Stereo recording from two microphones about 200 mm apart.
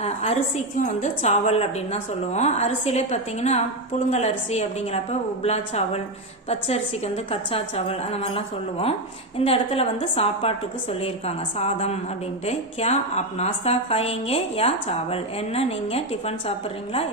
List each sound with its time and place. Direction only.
0.0 s a woman's voice: 30° left (ahead or behind)
7.3 s a woman's voice: 30° left (ahead or behind)